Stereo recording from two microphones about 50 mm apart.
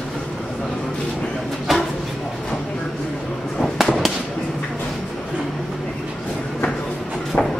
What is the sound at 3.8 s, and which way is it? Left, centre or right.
Fireworks, centre.